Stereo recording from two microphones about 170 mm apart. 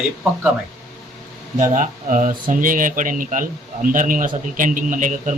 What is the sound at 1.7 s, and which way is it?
A man's voice, 50° right (ahead or behind).